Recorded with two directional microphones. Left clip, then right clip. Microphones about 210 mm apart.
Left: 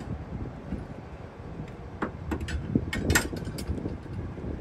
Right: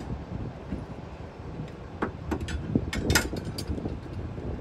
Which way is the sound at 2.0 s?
Centre (ahead or behind).